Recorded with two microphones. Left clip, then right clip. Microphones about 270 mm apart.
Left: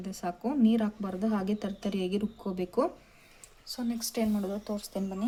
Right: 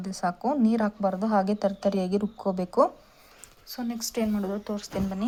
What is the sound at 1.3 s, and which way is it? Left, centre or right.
Speech, centre.